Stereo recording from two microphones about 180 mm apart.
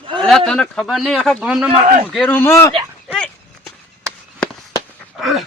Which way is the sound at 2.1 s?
10° left (ahead or behind).